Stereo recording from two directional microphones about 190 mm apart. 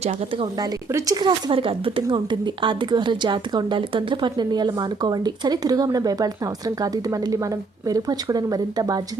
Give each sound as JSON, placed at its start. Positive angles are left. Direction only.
{"t": 0.6, "sound": "speech", "side_deg": -20}